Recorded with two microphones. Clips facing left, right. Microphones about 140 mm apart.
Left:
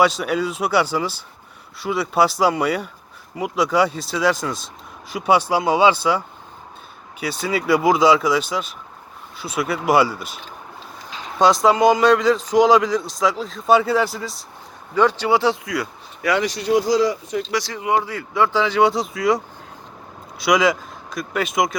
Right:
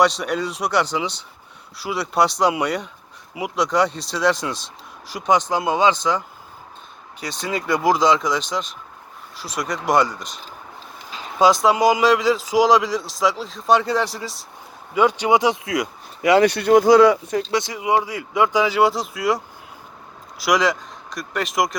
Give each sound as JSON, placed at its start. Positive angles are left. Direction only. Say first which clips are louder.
{"t": 0.0, "sound": "speech", "louder": "left 1 dB", "side_deg": 5}
{"t": 14.9, "sound": "speech", "louder": "even", "side_deg": -15}
{"t": 16.4, "sound": "speech", "louder": "right 5 dB", "side_deg": -60}
{"t": 17.5, "sound": "speech", "louder": "even", "side_deg": -20}
{"t": 20.4, "sound": "speech", "louder": "left 2 dB", "side_deg": 0}